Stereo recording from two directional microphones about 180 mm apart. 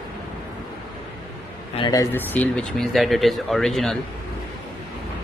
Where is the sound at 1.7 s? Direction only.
25° left (ahead or behind).